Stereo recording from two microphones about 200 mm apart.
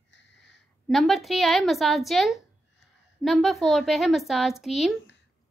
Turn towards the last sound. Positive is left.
turn(degrees=0)  # may be behind; listen again after turning